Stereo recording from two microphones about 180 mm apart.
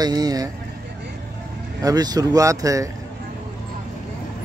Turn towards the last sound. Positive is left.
turn(degrees=-20)  # may be behind; listen again after turning